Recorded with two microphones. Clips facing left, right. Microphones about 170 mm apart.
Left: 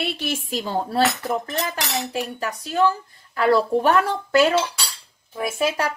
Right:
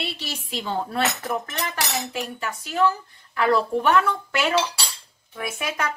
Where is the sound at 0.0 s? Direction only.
50° left (ahead or behind); by 4.6 s 35° left (ahead or behind).